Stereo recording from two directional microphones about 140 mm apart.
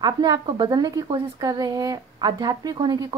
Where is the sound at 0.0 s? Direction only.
30° right (ahead or behind).